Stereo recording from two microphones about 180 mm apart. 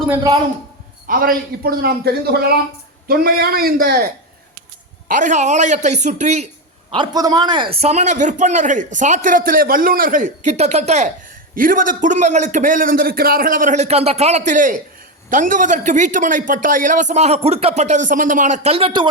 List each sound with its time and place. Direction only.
0.1 s a man's voice: 20° right (ahead or behind)
1.0 s a man's voice: 50° right (ahead or behind)
5.0 s a man's voice: 45° right (ahead or behind)
6.9 s a man's voice: 25° right (ahead or behind)
11.5 s a man's voice: 50° right (ahead or behind); by 19.0 s 30° right (ahead or behind)